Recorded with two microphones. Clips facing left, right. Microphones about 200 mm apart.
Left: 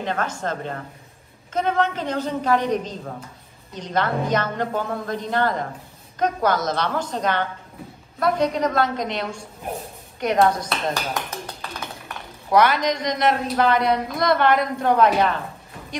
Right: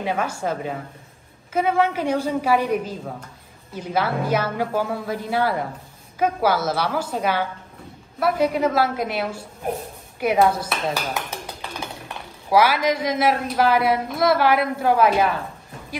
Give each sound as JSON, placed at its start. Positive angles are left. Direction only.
{"t": 0.0, "sound": "a woman's voice", "side_deg": -10}
{"t": 12.4, "sound": "speech", "side_deg": -5}